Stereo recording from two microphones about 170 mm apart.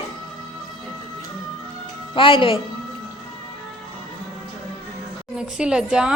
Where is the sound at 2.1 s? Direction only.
30° left (ahead or behind).